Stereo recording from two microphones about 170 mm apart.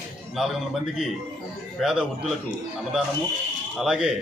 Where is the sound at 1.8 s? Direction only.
5° right (ahead or behind).